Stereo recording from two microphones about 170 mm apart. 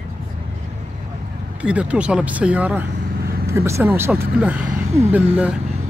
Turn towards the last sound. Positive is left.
turn(degrees=-10)  # may be behind; listen again after turning